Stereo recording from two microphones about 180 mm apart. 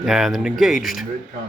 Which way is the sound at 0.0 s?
Centre (ahead or behind).